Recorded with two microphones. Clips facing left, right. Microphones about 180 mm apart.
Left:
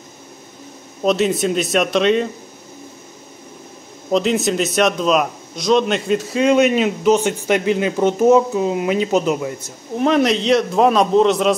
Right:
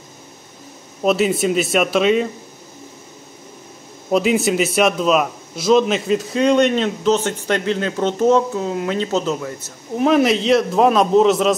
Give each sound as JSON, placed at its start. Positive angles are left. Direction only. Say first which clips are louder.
{"t": 1.0, "sound": "a man's voice", "louder": "even", "side_deg": -5}
{"t": 4.1, "sound": "a man's voice", "louder": "right 1 dB", "side_deg": -5}
{"t": 9.9, "sound": "a man's voice", "louder": "right 1 dB", "side_deg": -5}